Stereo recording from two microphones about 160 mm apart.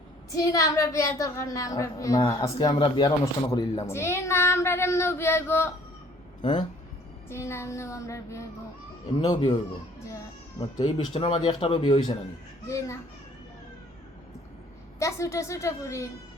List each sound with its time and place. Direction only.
0.3 s a woman's voice: 20° left (ahead or behind)
6.4 s speech: 30° left (ahead or behind)
7.3 s child singing: 15° left (ahead or behind)
9.1 s a woman's voice: 25° left (ahead or behind)
10.8 s a woman's voice: 35° left (ahead or behind); by 13.0 s 20° left (ahead or behind)
14.9 s a woman's voice: 20° left (ahead or behind)